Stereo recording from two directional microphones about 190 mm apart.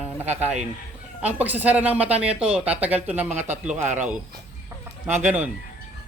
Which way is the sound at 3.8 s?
40° right (ahead or behind).